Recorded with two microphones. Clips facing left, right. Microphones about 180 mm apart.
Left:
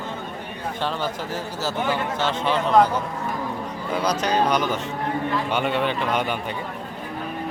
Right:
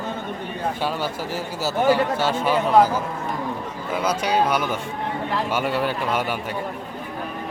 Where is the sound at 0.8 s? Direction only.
10° right (ahead or behind).